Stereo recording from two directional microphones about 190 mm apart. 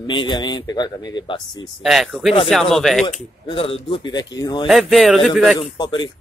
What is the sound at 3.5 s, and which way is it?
Speech, 25° left (ahead or behind).